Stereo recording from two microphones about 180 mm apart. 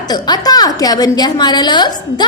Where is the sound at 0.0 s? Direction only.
20° left (ahead or behind).